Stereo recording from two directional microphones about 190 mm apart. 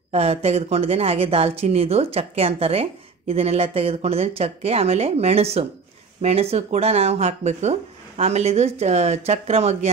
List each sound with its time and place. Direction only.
0.1 s speech: 30° right (ahead or behind)